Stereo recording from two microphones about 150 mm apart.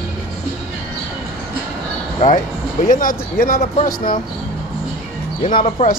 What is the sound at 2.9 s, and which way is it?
Speech, 65° left (ahead or behind).